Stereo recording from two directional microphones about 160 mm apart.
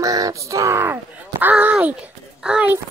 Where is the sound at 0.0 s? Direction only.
20° right (ahead or behind).